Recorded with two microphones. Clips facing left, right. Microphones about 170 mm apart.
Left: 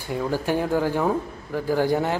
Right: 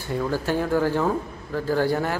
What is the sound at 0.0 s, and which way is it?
A man's voice, 15° left (ahead or behind).